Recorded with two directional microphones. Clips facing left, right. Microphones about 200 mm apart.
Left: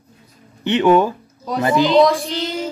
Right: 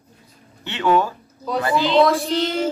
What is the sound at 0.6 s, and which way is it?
A man's voice, 20° left (ahead or behind).